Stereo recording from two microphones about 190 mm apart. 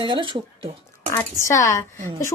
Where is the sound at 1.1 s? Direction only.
15° left (ahead or behind).